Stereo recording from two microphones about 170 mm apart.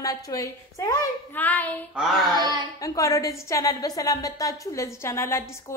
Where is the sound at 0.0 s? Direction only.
20° left (ahead or behind).